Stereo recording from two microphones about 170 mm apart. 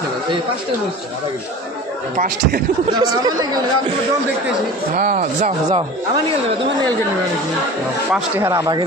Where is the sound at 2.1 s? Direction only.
55° right (ahead or behind).